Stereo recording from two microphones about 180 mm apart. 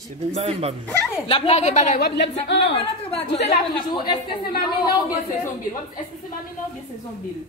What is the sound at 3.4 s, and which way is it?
Speech, 25° left (ahead or behind).